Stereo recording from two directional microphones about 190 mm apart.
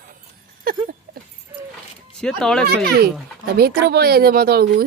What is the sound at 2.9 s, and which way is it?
Speech, 55° right (ahead or behind).